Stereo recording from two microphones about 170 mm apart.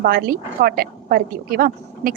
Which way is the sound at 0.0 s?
60° right (ahead or behind).